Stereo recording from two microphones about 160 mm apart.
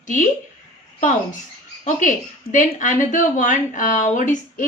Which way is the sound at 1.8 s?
50° left (ahead or behind).